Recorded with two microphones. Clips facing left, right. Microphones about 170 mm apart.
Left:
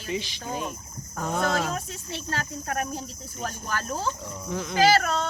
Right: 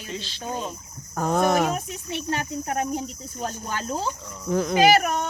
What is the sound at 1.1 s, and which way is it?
Speech, 40° right (ahead or behind).